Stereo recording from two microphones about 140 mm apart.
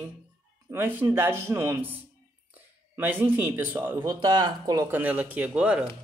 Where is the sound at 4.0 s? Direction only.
30° right (ahead or behind).